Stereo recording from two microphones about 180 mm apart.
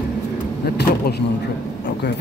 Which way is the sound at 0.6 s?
60° left (ahead or behind).